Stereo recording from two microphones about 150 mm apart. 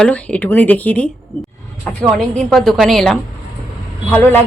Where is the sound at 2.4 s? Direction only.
5° left (ahead or behind).